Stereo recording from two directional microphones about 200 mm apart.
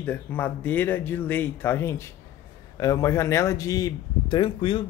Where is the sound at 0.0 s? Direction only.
10° left (ahead or behind).